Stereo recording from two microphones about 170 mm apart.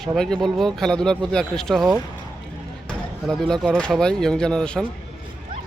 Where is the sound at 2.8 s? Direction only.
5° left (ahead or behind).